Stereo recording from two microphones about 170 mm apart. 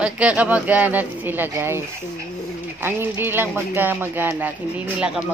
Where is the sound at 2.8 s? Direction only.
15° right (ahead or behind).